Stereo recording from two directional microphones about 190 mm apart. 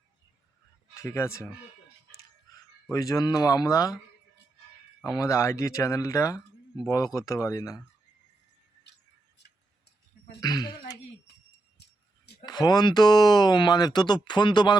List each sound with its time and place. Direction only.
0.9 s speech: 15° left (ahead or behind)
2.6 s speech: 20° left (ahead or behind)
5.1 s speech: 15° left (ahead or behind)
10.4 s speech: 20° left (ahead or behind)
12.4 s speech: 20° left (ahead or behind)